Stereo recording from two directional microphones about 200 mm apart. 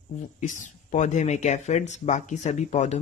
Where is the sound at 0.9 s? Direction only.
35° left (ahead or behind).